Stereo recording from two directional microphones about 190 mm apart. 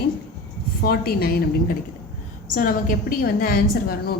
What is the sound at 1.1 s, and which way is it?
A woman's voice, 50° left (ahead or behind).